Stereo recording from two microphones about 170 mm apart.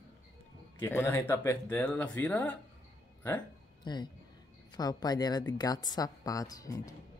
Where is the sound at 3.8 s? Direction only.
25° left (ahead or behind).